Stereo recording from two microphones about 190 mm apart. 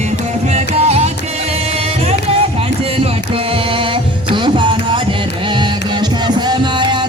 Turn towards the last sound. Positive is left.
turn(degrees=-25)  # may be behind; listen again after turning